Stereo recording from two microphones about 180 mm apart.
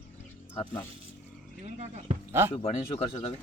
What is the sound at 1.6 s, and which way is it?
Speech, 35° right (ahead or behind).